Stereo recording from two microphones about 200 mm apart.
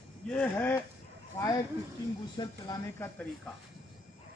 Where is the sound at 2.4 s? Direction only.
20° left (ahead or behind).